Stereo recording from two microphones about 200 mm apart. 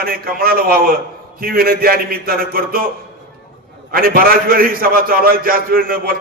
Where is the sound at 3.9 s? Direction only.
45° right (ahead or behind).